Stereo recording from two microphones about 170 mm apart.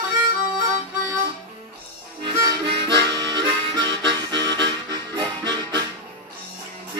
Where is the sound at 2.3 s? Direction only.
25° right (ahead or behind).